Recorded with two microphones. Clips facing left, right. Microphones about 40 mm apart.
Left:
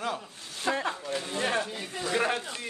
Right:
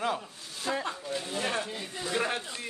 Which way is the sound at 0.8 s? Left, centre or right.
Left.